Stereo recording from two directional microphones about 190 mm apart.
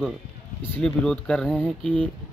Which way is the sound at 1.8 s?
25° right (ahead or behind).